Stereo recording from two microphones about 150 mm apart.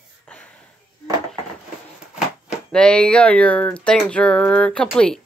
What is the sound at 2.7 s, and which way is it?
Speech, 5° left (ahead or behind).